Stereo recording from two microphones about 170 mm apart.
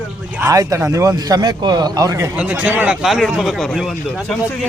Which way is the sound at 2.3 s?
10° right (ahead or behind).